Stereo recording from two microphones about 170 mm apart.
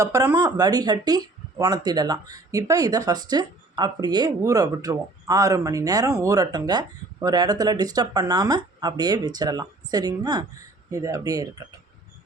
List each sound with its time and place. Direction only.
0.0 s speech: 20° right (ahead or behind)